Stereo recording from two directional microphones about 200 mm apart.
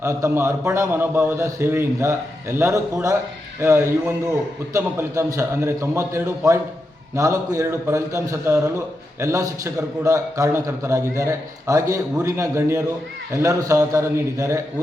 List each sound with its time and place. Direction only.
0.0 s a man's voice: 15° right (ahead or behind)